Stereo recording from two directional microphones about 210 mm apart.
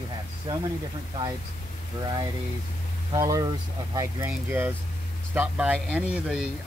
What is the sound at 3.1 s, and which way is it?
Speech, 15° right (ahead or behind).